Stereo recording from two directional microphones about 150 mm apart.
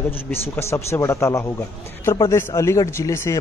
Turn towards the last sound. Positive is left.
turn(degrees=20)  # may be behind; listen again after turning